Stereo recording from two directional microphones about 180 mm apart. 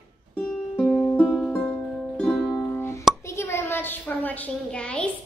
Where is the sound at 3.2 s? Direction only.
15° left (ahead or behind).